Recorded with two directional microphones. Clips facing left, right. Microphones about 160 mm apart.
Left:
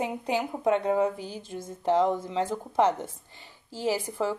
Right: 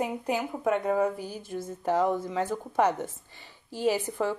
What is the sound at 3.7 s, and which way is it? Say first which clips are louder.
Speech: right 2 dB; 15° right (ahead or behind).